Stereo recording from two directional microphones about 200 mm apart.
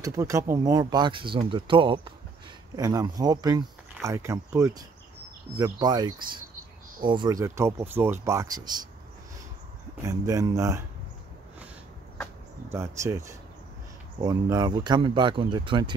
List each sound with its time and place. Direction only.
0.0 s speech: 15° right (ahead or behind)
10.0 s speech: 15° right (ahead or behind)
12.6 s speech: 15° right (ahead or behind)